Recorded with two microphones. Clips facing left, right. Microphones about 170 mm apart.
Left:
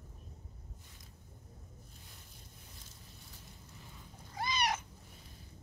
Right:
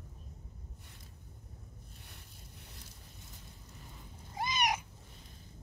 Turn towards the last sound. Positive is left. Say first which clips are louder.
# right 1 dB
turn(degrees=-15)  # may be behind; listen again after turning